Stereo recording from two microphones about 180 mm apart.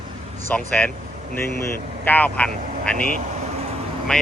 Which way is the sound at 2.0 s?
10° left (ahead or behind).